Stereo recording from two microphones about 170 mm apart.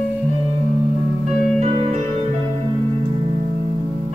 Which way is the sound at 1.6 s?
35° right (ahead or behind).